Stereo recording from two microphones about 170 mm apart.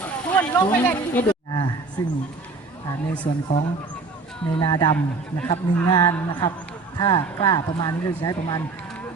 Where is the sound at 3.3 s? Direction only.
30° left (ahead or behind).